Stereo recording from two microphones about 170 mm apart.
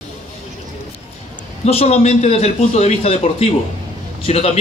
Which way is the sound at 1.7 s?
40° left (ahead or behind).